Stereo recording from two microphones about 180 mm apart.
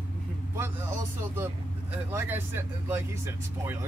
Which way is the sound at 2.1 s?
15° right (ahead or behind).